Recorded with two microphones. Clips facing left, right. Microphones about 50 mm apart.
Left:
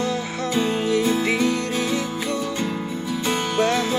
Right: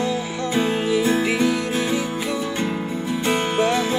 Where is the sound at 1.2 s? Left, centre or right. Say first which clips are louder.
Right 1 dB; centre.